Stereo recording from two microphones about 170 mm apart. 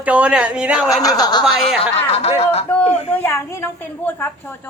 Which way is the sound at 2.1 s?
35° left (ahead or behind).